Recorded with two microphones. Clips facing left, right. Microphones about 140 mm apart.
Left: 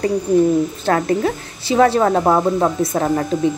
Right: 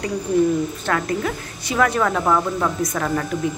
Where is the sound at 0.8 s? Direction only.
30° left (ahead or behind).